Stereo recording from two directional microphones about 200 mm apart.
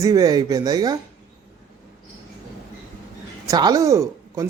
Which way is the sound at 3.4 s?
20° right (ahead or behind).